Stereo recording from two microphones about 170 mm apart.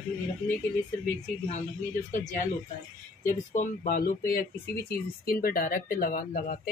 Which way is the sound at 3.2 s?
50° left (ahead or behind).